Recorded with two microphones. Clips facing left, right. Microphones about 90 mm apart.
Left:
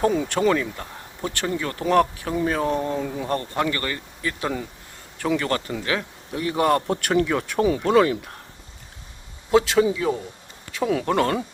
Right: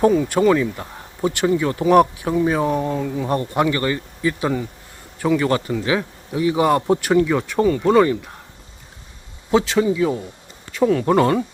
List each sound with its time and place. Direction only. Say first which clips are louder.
0.1 s speech: right 5 dB; 5° right (ahead or behind)
0.8 s speech: right 7 dB; 15° right (ahead or behind); by 3.2 s centre (ahead or behind)
3.2 s speech: right 6 dB; 15° right (ahead or behind)
9.5 s speech: right 1 dB; centre (ahead or behind)